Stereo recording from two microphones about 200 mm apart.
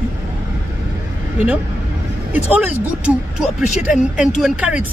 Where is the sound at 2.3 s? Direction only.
5° right (ahead or behind).